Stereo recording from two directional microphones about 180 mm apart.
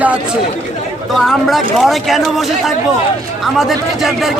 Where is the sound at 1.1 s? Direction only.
Centre (ahead or behind).